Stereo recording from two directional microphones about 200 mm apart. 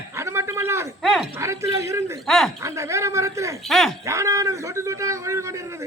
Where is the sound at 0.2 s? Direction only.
15° right (ahead or behind).